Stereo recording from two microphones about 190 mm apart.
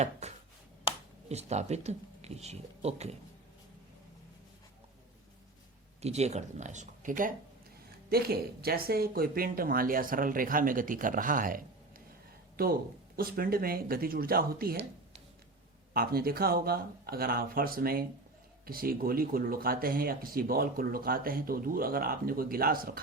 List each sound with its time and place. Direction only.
0.0 s chopping: 35° right (ahead or behind)
1.3 s speech: 35° right (ahead or behind)
6.0 s speech: 35° right (ahead or behind)
8.6 s speech: 55° right (ahead or behind)
13.1 s speech: 50° right (ahead or behind)
15.9 s speech: 50° right (ahead or behind)